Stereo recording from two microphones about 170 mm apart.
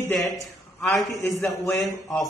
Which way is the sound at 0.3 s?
Centre (ahead or behind).